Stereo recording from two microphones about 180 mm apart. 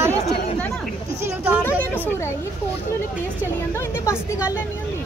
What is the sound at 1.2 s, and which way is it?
Speech, 10° right (ahead or behind).